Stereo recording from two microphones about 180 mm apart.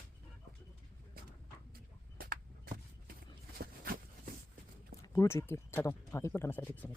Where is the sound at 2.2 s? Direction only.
50° right (ahead or behind).